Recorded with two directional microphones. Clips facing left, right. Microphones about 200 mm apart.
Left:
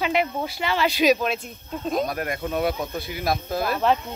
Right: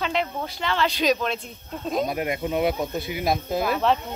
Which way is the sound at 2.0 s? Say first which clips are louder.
Right 2 dB; 15° right (ahead or behind).